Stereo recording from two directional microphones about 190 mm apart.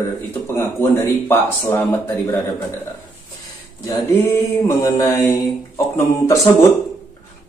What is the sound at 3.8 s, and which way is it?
A man's voice, 15° left (ahead or behind).